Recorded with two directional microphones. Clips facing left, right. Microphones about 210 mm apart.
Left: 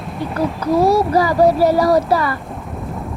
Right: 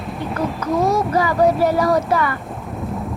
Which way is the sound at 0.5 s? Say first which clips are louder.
Left 5 dB; 35° left (ahead or behind).